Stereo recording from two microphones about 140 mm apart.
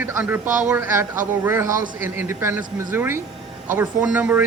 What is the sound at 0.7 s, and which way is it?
Speech, 20° right (ahead or behind).